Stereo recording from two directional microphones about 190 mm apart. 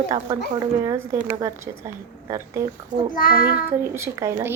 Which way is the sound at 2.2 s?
15° right (ahead or behind).